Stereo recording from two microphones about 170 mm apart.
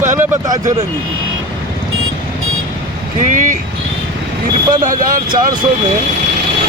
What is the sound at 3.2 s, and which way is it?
Speech, 50° right (ahead or behind).